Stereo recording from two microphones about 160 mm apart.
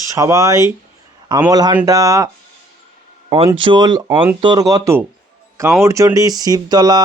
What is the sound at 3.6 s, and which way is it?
Speech, 30° right (ahead or behind).